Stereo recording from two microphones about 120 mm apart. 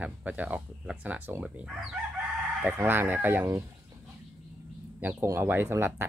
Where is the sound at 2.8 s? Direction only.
15° right (ahead or behind).